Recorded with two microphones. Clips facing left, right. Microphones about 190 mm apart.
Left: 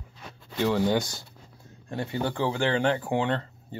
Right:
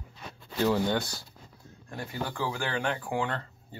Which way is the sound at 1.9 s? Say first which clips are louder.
Left 6 dB; 25° left (ahead or behind).